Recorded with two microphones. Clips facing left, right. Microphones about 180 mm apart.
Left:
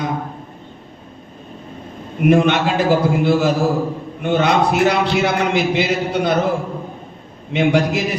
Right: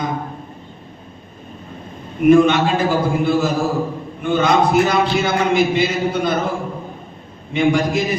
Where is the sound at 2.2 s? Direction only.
70° left (ahead or behind).